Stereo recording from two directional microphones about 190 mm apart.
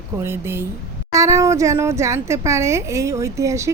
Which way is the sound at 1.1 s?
15° right (ahead or behind).